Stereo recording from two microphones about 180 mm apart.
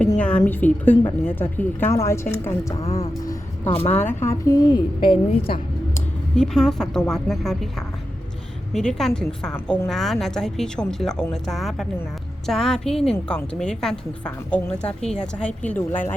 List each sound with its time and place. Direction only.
0.2 s a woman's voice: 5° left (ahead or behind)
5.3 s a woman's voice: 30° left (ahead or behind)
6.3 s a woman's voice: centre (ahead or behind)
9.5 s a woman's voice: 15° left (ahead or behind)
9.9 s a woman's voice: centre (ahead or behind)